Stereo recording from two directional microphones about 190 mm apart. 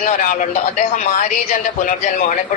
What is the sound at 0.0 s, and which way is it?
Speech, 40° left (ahead or behind).